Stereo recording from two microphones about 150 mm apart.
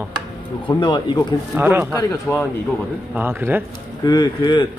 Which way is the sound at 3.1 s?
15° right (ahead or behind).